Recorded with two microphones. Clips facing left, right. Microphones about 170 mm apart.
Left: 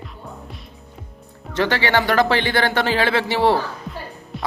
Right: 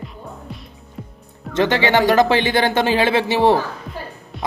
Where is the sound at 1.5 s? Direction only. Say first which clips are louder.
Right 3 dB; 20° right (ahead or behind).